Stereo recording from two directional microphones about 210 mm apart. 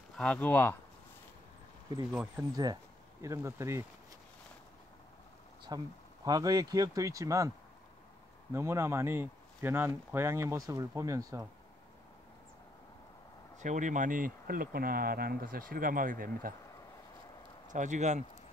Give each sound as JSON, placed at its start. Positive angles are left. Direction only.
{"t": 0.2, "sound": "speech", "side_deg": 5}
{"t": 2.5, "sound": "speech", "side_deg": -20}
{"t": 5.7, "sound": "speech", "side_deg": -20}
{"t": 8.5, "sound": "speech", "side_deg": -15}
{"t": 13.6, "sound": "speech", "side_deg": -35}
{"t": 17.6, "sound": "speech", "side_deg": -35}